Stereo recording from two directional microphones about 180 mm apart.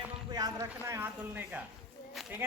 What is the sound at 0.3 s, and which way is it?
Speech, 20° right (ahead or behind).